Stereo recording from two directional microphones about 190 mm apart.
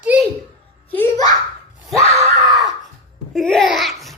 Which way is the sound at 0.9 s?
15° left (ahead or behind).